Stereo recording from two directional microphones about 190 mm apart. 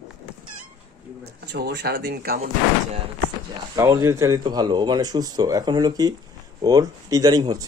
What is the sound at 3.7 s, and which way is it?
Speech, 20° right (ahead or behind).